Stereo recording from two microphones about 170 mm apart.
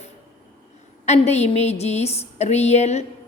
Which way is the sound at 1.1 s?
40° left (ahead or behind).